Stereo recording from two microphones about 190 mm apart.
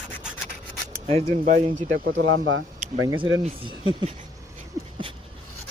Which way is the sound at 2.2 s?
90° right.